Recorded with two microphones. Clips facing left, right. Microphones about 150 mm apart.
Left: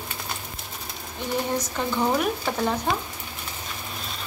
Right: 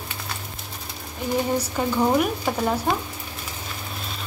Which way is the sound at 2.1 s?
5° right (ahead or behind).